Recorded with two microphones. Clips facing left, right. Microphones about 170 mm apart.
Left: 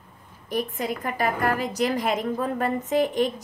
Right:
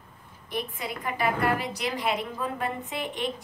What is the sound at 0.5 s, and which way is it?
A woman's voice, 45° left (ahead or behind).